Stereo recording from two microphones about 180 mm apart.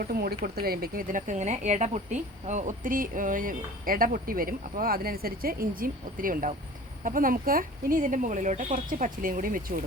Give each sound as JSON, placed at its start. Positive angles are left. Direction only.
{"t": 0.1, "sound": "speech", "side_deg": -60}